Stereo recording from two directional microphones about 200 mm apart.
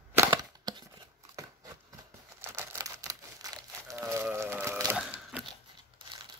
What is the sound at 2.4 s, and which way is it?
Crumpling, 15° right (ahead or behind).